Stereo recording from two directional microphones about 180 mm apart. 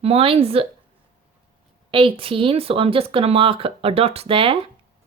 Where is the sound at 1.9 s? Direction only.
30° right (ahead or behind).